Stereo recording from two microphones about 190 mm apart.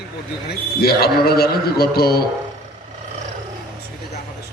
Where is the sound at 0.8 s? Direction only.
55° left (ahead or behind).